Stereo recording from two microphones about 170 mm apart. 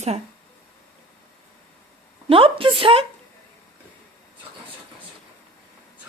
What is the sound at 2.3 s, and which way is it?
Speech, 30° right (ahead or behind).